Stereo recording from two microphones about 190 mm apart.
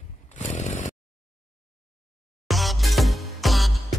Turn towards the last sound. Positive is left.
turn(degrees=0)  # may be behind; listen again after turning